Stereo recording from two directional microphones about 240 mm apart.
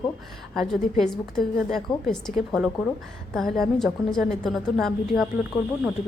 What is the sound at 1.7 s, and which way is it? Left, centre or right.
A woman's voice, centre.